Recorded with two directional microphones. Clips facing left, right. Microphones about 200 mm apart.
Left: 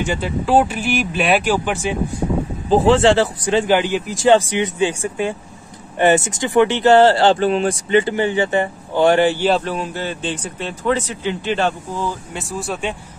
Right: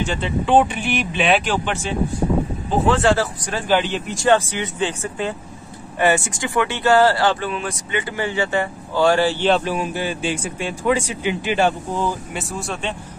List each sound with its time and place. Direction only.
0.0 s speech: 10° left (ahead or behind)
2.7 s speech: 30° left (ahead or behind); by 5.3 s 10° left (ahead or behind)
5.9 s speech: 20° left (ahead or behind)
9.7 s speech: 10° right (ahead or behind)
12.4 s speech: centre (ahead or behind)